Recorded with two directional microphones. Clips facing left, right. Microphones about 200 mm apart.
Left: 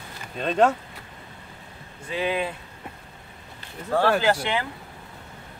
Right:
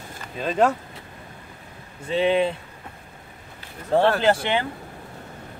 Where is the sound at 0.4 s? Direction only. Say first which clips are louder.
Even; 5° right (ahead or behind).